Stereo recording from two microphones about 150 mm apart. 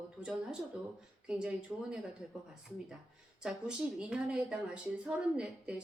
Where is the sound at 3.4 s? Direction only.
5° right (ahead or behind).